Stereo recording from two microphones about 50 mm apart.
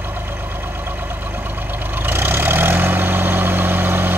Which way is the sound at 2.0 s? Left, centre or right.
Right.